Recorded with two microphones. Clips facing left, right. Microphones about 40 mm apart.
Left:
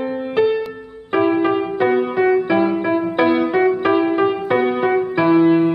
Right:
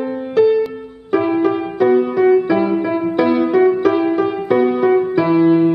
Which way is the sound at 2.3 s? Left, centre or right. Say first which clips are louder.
Right 2 dB; centre.